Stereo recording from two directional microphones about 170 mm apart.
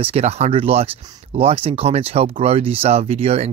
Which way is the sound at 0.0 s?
35° right (ahead or behind).